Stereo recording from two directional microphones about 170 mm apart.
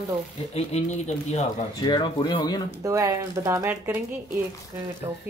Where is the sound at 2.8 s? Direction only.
20° right (ahead or behind).